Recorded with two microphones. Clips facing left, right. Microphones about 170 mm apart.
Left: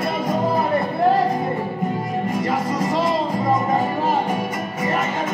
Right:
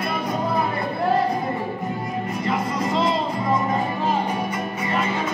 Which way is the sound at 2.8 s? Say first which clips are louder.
Even; 40° left (ahead or behind).